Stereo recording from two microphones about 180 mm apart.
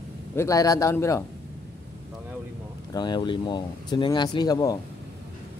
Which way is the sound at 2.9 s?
25° left (ahead or behind).